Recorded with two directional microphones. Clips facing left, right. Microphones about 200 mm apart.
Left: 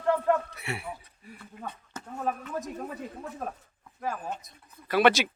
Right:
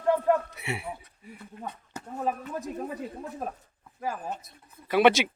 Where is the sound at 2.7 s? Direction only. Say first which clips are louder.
Right 3 dB; 15° right (ahead or behind).